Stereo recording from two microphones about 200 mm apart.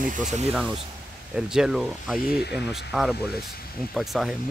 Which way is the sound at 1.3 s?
5° right (ahead or behind).